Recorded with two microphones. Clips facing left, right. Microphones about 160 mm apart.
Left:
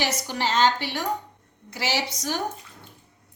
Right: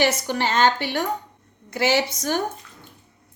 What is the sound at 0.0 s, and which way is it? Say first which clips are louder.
A woman's voice: right 5 dB; 55° right (ahead or behind).